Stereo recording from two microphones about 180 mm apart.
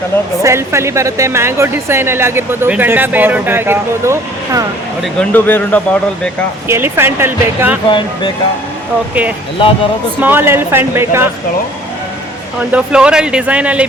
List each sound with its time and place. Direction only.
0.4 s a woman's voice: 15° right (ahead or behind)
5.2 s speech: 10° left (ahead or behind)
6.7 s a woman's voice: 15° right (ahead or behind)
7.9 s speech: 25° left (ahead or behind)
10.2 s a woman's voice: 10° right (ahead or behind)
12.5 s a woman's voice: 5° right (ahead or behind)